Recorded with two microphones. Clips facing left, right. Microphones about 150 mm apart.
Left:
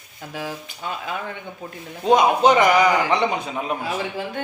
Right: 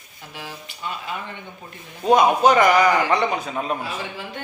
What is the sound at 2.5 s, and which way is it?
A man's voice, 15° left (ahead or behind).